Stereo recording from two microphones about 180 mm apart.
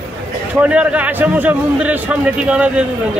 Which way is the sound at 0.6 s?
5° right (ahead or behind).